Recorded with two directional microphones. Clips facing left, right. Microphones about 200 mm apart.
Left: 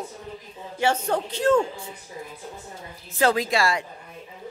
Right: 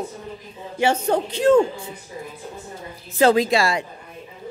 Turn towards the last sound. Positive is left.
turn(degrees=-20)  # may be behind; listen again after turning